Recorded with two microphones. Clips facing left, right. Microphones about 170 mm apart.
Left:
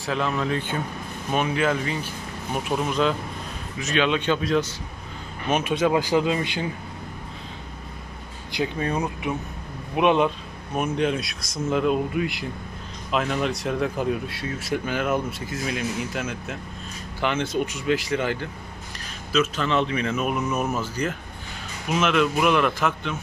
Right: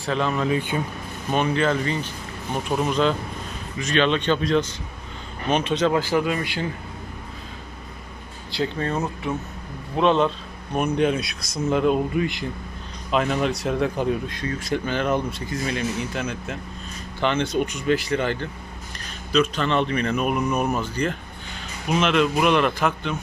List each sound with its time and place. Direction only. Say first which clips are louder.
0.0 s speech: right 2 dB; centre (ahead or behind); by 6.7 s 20° left (ahead or behind)
8.5 s speech: right 1 dB; 15° left (ahead or behind)
10.8 s speech: right 3 dB; centre (ahead or behind)
20.3 s speech: right 2 dB; 15° right (ahead or behind)
20.7 s speech: right 2 dB; 5° left (ahead or behind)